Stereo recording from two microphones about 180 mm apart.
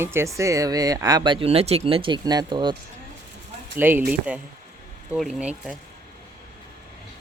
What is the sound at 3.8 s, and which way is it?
Speech, 10° right (ahead or behind).